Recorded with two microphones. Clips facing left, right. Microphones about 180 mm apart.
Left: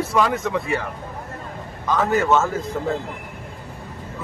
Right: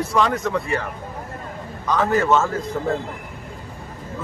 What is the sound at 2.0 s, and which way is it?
Speech, 5° left (ahead or behind).